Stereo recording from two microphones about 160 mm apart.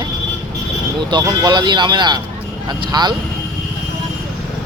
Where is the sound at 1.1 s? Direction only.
25° right (ahead or behind).